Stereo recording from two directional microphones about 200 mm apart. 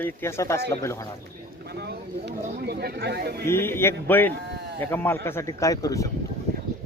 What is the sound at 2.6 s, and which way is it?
Speech, 55° right (ahead or behind).